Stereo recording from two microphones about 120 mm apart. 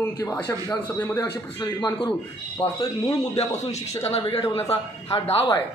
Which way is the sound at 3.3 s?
65° left (ahead or behind).